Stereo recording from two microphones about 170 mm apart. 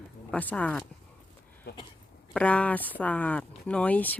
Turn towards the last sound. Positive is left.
turn(degrees=10)  # may be behind; listen again after turning